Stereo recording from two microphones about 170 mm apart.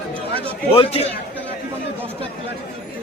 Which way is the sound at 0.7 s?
35° left (ahead or behind).